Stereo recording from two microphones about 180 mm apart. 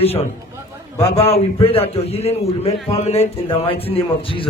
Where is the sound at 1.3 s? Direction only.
35° left (ahead or behind).